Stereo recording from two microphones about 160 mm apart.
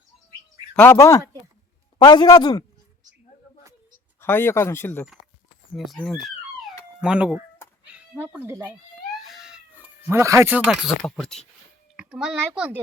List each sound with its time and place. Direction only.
0.8 s a man's voice: 15° left (ahead or behind)
4.2 s speech: 15° left (ahead or behind)
5.7 s speech: centre (ahead or behind)
9.2 s cat: centre (ahead or behind)
10.1 s speech: 15° right (ahead or behind)
10.7 s a child's voice: centre (ahead or behind)